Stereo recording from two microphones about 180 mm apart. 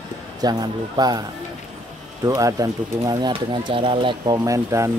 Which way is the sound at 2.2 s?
20° right (ahead or behind).